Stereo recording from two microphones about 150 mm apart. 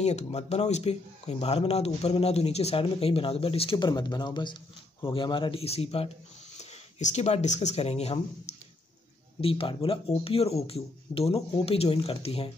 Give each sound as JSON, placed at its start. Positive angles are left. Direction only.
{"t": 0.0, "sound": "speech", "side_deg": 45}